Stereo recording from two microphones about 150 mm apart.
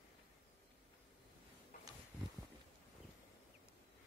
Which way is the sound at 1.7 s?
60° left (ahead or behind).